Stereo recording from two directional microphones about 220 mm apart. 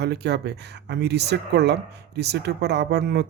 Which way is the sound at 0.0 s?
50° right (ahead or behind).